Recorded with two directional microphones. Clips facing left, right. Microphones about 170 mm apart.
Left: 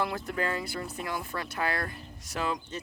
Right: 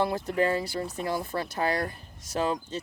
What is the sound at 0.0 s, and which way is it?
Speech, 30° right (ahead or behind).